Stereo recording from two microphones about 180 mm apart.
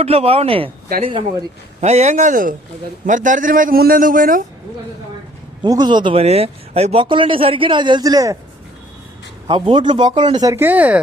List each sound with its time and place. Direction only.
0.0 s speech: 35° right (ahead or behind)
0.9 s speech: 55° right (ahead or behind)
1.8 s a man's voice: 40° right (ahead or behind)
5.6 s speech: 20° right (ahead or behind)
9.5 s speech: 30° right (ahead or behind); by 11.0 s 10° right (ahead or behind)